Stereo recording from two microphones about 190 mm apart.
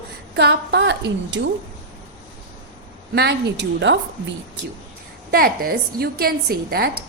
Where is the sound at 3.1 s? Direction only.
65° right (ahead or behind).